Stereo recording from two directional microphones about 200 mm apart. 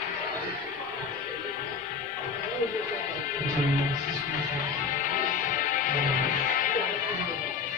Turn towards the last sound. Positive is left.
turn(degrees=40)  # may be behind; listen again after turning